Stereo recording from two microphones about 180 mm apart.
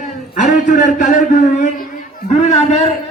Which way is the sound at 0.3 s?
45° left (ahead or behind).